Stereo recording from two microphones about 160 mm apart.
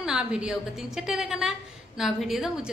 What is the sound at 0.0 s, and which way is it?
A woman's voice, 5° right (ahead or behind).